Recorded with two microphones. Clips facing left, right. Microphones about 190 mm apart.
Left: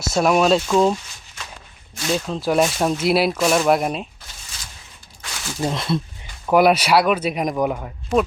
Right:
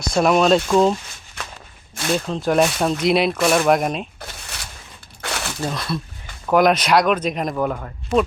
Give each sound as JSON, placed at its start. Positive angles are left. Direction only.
{"t": 0.1, "sound": "speech", "side_deg": 5}
{"t": 2.1, "sound": "speech", "side_deg": 5}
{"t": 4.2, "sound": "zipper", "side_deg": -65}
{"t": 5.2, "sound": "a sound", "side_deg": -65}
{"t": 5.5, "sound": "speech", "side_deg": 20}
{"t": 6.5, "sound": "speech", "side_deg": 10}